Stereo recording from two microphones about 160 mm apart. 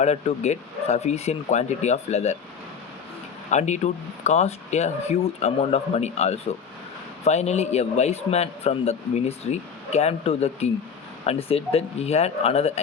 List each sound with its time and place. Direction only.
0.0 s speech: 45° left (ahead or behind)
3.5 s a man's voice: 45° left (ahead or behind)